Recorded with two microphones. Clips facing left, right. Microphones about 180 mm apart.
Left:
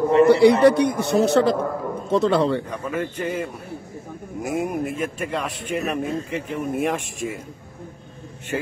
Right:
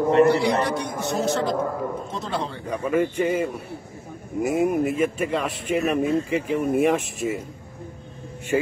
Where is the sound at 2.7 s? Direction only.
5° right (ahead or behind).